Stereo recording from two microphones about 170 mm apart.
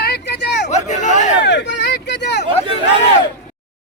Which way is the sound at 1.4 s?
90° left.